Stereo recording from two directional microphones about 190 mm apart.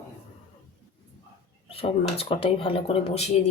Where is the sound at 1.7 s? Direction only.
30° left (ahead or behind).